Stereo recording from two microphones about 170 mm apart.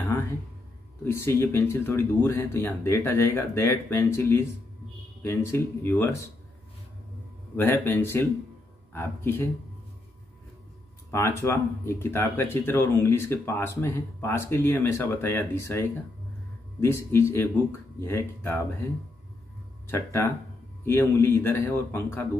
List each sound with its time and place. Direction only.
0.0 s music: 15° left (ahead or behind)
1.1 s speech: 15° left (ahead or behind)
7.5 s speech: 15° left (ahead or behind)
11.1 s speech: 15° left (ahead or behind)
19.9 s speech: 15° left (ahead or behind)